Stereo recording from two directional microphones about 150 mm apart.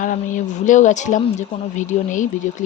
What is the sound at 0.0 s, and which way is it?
Speech, 55° left (ahead or behind).